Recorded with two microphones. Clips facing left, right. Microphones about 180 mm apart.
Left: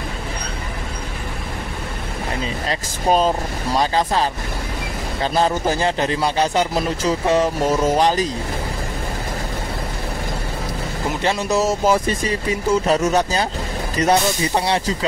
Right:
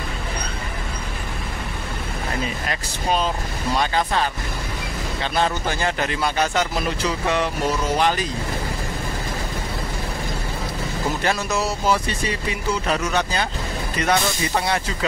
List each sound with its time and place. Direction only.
2.7 s speech: 40° left (ahead or behind)
11.5 s speech: 45° left (ahead or behind)